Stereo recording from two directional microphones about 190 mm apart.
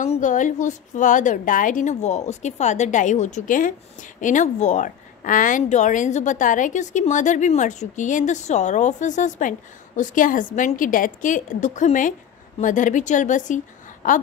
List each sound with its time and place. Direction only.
0.0 s a woman's voice: 40° left (ahead or behind)